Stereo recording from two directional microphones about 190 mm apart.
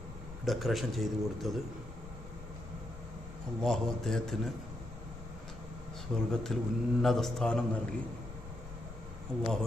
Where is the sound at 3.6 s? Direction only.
Centre (ahead or behind).